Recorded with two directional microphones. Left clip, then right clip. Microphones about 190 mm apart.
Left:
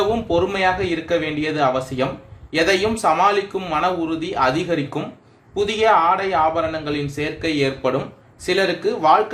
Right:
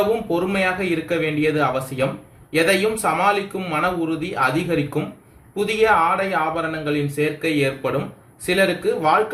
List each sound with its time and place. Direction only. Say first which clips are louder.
0.3 s a man's voice: left 3 dB; 40° left (ahead or behind)